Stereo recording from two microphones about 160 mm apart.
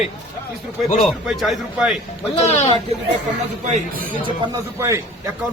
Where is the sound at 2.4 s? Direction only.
45° left (ahead or behind).